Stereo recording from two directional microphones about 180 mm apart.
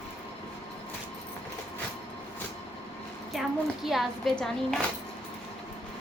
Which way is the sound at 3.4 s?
Centre (ahead or behind).